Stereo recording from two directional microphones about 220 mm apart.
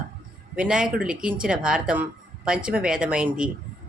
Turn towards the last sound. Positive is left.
turn(degrees=-5)  # may be behind; listen again after turning